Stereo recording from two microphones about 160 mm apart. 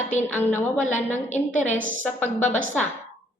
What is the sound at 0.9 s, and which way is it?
Speech, 50° left (ahead or behind).